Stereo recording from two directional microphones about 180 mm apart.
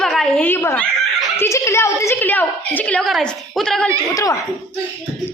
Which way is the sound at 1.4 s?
15° left (ahead or behind).